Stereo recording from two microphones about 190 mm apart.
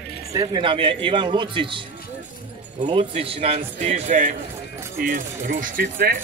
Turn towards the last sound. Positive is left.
turn(degrees=-50)  # may be behind; listen again after turning